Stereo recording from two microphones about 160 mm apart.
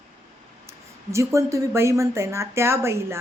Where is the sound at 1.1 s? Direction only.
20° right (ahead or behind).